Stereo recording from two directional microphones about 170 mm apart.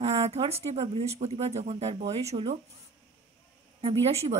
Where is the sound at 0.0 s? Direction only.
40° right (ahead or behind).